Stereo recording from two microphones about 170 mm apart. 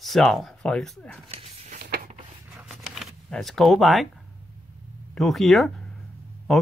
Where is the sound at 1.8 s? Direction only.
75° right (ahead or behind).